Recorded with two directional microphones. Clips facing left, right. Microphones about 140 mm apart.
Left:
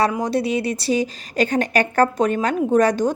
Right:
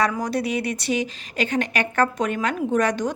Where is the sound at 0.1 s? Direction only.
25° left (ahead or behind).